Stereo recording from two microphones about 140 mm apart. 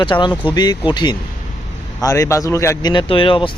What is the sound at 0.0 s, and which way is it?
A man's voice, 35° left (ahead or behind).